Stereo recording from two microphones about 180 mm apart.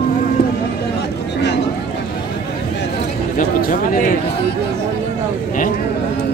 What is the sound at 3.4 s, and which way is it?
Speech, 50° left (ahead or behind).